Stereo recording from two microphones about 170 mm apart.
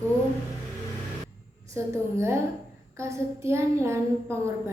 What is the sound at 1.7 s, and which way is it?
A woman's voice, 15° right (ahead or behind).